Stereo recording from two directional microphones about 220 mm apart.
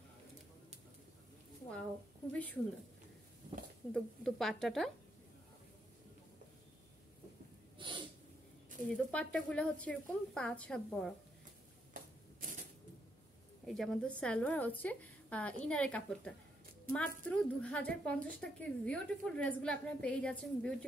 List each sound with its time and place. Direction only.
2.3 s a woman's voice: 5° left (ahead or behind)
3.9 s a woman's voice: centre (ahead or behind)
7.8 s sneeze: 20° right (ahead or behind)
8.8 s a woman's voice: 5° left (ahead or behind)
11.9 s a sound: 40° right (ahead or behind)
13.7 s a woman's voice: centre (ahead or behind)